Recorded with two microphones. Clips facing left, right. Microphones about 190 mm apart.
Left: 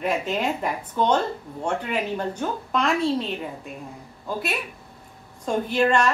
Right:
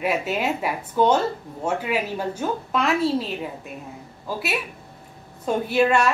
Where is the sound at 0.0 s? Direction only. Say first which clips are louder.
Right 1 dB; 5° right (ahead or behind).